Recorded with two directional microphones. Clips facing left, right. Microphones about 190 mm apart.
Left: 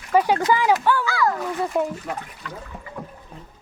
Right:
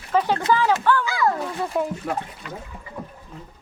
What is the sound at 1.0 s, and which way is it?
Speech, 20° right (ahead or behind).